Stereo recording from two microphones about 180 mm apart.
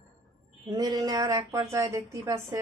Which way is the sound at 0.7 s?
25° right (ahead or behind).